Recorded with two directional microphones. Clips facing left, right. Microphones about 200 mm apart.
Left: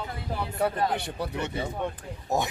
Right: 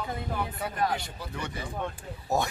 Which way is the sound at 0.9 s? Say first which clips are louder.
Left 3 dB; 60° left (ahead or behind).